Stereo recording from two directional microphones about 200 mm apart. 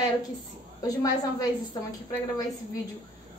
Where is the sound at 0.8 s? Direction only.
20° left (ahead or behind).